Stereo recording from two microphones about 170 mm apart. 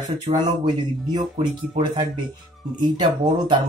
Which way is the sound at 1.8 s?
25° right (ahead or behind).